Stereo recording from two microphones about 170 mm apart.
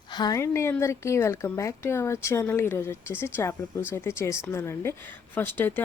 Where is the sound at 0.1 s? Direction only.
25° left (ahead or behind).